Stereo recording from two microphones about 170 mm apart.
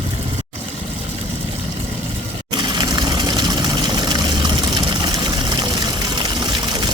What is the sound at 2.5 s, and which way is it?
Vehicle, 25° right (ahead or behind).